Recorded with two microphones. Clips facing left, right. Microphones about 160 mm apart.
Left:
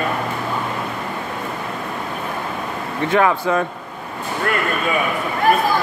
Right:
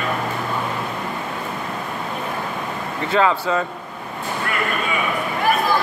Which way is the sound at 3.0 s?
15° left (ahead or behind).